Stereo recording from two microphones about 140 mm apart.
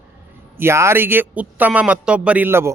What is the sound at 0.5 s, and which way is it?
A man's voice, 20° right (ahead or behind).